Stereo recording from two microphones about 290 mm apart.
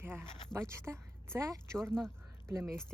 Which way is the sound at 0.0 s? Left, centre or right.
Centre.